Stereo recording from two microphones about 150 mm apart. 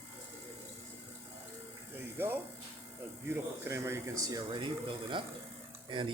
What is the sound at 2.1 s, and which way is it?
Speech, 15° right (ahead or behind).